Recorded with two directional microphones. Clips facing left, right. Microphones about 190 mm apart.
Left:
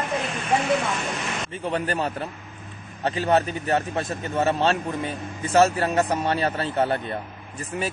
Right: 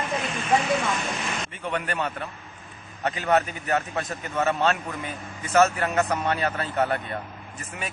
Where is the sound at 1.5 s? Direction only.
35° left (ahead or behind).